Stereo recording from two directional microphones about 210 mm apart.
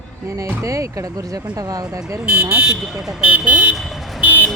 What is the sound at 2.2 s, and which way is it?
Speech, 5° right (ahead or behind).